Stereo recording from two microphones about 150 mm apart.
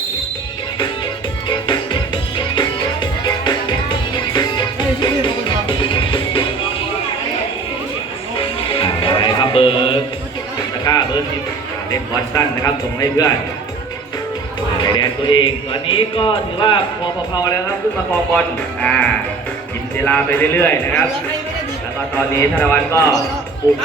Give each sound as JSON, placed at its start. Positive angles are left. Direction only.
{"t": 1.5, "sound": "music", "side_deg": 30}
{"t": 8.4, "sound": "music", "side_deg": 35}
{"t": 11.9, "sound": "a man's voice", "side_deg": 25}
{"t": 14.8, "sound": "speech", "side_deg": 30}
{"t": 18.3, "sound": "speech", "side_deg": 10}
{"t": 20.1, "sound": "a man's voice", "side_deg": 10}
{"t": 22.4, "sound": "a man's voice", "side_deg": 20}